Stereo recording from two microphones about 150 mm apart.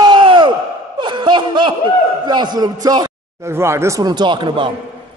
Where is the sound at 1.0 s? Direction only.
30° right (ahead or behind).